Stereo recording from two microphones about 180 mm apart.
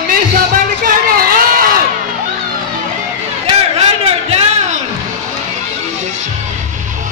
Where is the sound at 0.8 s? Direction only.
55° right (ahead or behind).